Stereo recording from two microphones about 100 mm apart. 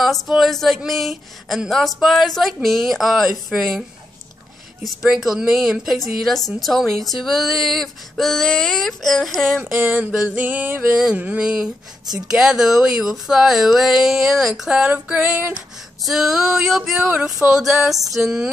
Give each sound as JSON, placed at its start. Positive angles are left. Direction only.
{"t": 0.0, "sound": "a woman's voice", "side_deg": 0}
{"t": 4.8, "sound": "a woman's voice", "side_deg": -5}
{"t": 9.6, "sound": "a sound", "side_deg": -20}
{"t": 12.3, "sound": "a woman's voice", "side_deg": -5}
{"t": 16.0, "sound": "a woman's voice", "side_deg": -5}